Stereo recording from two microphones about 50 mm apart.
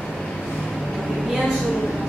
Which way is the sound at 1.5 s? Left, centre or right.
Centre.